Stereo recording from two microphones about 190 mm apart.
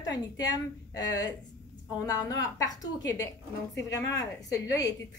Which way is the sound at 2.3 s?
20° left (ahead or behind).